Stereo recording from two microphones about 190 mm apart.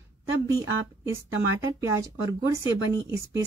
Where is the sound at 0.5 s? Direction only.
15° right (ahead or behind).